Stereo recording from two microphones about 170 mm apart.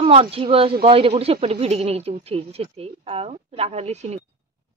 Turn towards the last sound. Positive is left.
turn(degrees=-40)  # may be behind; listen again after turning